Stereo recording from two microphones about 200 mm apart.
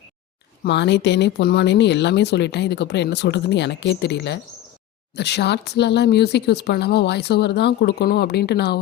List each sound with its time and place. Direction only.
0.6 s speech: 60° left (ahead or behind)